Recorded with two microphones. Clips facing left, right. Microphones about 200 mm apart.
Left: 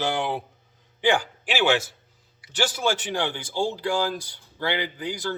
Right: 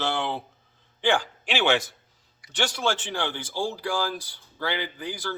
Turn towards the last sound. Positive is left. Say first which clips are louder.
# left 3 dB
turn(degrees=15)  # may be behind; listen again after turning